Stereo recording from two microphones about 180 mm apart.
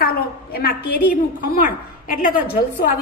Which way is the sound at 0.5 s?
55° left (ahead or behind).